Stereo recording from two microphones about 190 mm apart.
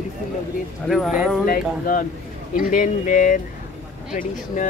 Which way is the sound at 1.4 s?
45° left (ahead or behind).